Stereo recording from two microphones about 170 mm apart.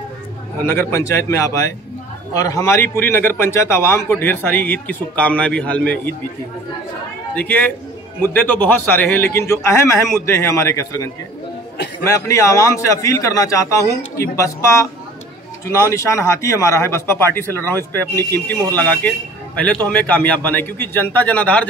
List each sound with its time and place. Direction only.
0.7 s a man's voice: 15° left (ahead or behind)
7.3 s a man's voice: 10° left (ahead or behind)
15.9 s a man's voice: 15° left (ahead or behind)